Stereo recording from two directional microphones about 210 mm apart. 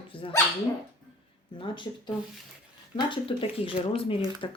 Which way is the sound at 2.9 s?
25° left (ahead or behind).